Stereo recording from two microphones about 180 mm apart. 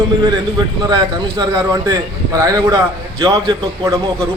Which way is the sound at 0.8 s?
25° right (ahead or behind).